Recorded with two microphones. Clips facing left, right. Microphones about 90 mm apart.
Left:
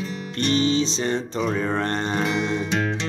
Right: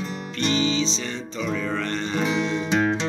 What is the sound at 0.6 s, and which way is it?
Speech, 55° left (ahead or behind).